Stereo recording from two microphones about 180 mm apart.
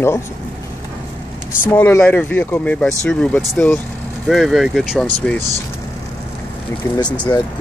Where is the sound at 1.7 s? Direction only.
10° left (ahead or behind).